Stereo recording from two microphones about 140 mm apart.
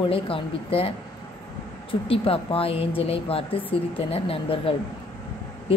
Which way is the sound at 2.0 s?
40° left (ahead or behind).